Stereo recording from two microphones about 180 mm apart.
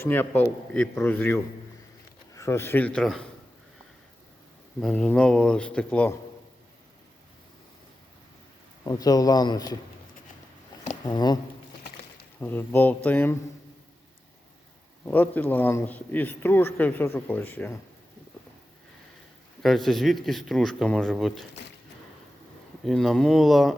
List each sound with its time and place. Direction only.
0.0 s a man's voice: 10° left (ahead or behind)
4.8 s a man's voice: 5° left (ahead or behind)
8.8 s a man's voice: 20° left (ahead or behind)
11.0 s a man's voice: 20° left (ahead or behind)
12.4 s a man's voice: 10° left (ahead or behind)
15.0 s a man's voice: 10° left (ahead or behind)
19.6 s speech: centre (ahead or behind)
22.8 s speech: centre (ahead or behind)